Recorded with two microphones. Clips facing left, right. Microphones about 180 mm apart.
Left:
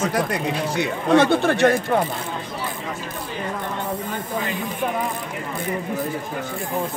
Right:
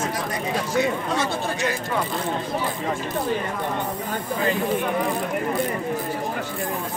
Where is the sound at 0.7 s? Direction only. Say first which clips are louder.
Left 5 dB; 60° left (ahead or behind).